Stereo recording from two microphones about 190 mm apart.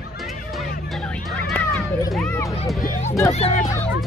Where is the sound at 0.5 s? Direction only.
5° left (ahead or behind).